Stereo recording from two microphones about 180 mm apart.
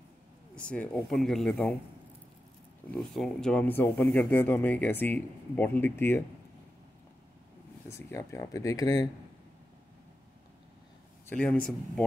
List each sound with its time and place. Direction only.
0.6 s speech: 5° left (ahead or behind)
2.9 s speech: centre (ahead or behind)
8.1 s speech: 15° left (ahead or behind)
11.2 s speech: 5° left (ahead or behind)